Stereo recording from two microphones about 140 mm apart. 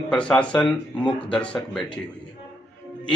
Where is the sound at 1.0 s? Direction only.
35° left (ahead or behind).